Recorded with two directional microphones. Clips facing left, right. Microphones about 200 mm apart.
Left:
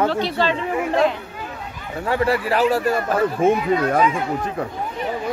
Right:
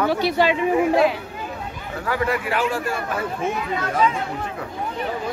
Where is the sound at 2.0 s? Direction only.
30° left (ahead or behind).